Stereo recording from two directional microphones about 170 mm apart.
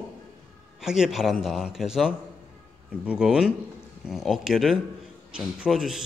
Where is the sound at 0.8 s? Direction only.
5° right (ahead or behind).